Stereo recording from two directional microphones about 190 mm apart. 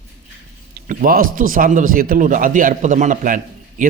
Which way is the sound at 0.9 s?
50° right (ahead or behind).